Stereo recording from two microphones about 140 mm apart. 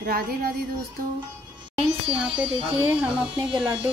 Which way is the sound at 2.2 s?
10° right (ahead or behind).